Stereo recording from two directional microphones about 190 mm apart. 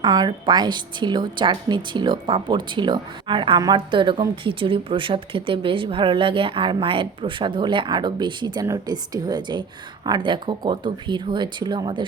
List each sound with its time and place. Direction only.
0.0 s a woman's voice: 20° right (ahead or behind)